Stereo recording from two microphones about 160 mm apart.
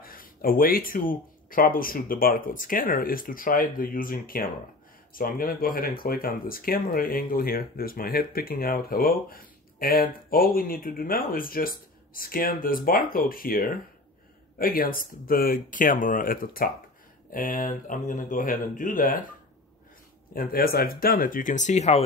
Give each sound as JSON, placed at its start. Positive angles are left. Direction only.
{"t": 0.0, "sound": "speech", "side_deg": 65}
{"t": 20.3, "sound": "speech", "side_deg": 65}